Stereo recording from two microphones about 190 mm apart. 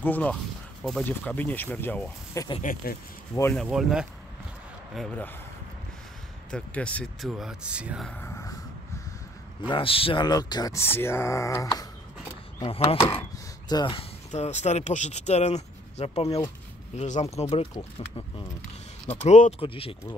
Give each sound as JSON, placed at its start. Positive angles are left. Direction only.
{"t": 0.0, "sound": "speech", "side_deg": 10}
{"t": 2.6, "sound": "speech", "side_deg": 45}
{"t": 3.6, "sound": "speech", "side_deg": -5}
{"t": 6.5, "sound": "speech", "side_deg": 5}
{"t": 8.1, "sound": "a sound", "side_deg": 10}
{"t": 9.7, "sound": "speech", "side_deg": 30}
{"t": 12.5, "sound": "speech", "side_deg": 30}
{"t": 14.3, "sound": "speech", "side_deg": 35}